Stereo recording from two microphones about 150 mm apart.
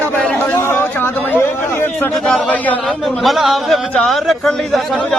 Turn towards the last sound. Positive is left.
turn(degrees=0)  # may be behind; listen again after turning